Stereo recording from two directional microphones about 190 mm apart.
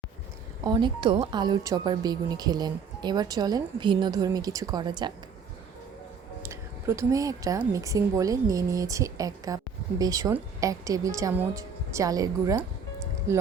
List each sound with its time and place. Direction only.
0.6 s a woman's voice: 25° right (ahead or behind)
6.4 s a sound: 15° right (ahead or behind)
7.6 s a woman's voice: 15° right (ahead or behind)